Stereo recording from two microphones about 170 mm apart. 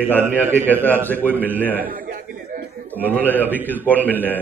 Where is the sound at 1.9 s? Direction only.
55° right (ahead or behind).